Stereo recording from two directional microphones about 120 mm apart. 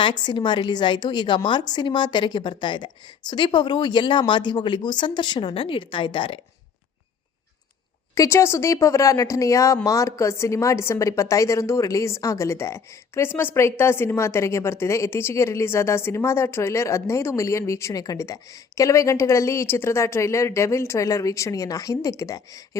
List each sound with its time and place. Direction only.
0.0 s a woman's voice: 35° left (ahead or behind)
8.1 s a woman's voice: 25° left (ahead or behind)